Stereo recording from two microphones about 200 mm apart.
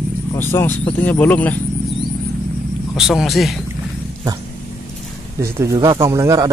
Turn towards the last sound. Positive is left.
turn(degrees=-15)  # may be behind; listen again after turning